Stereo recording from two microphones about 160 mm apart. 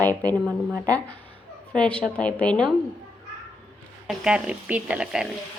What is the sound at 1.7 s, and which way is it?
A woman's voice, 5° left (ahead or behind).